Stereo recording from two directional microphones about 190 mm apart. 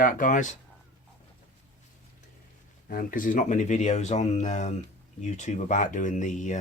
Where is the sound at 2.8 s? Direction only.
50° left (ahead or behind).